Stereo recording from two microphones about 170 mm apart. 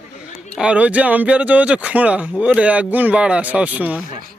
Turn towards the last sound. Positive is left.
turn(degrees=-10)  # may be behind; listen again after turning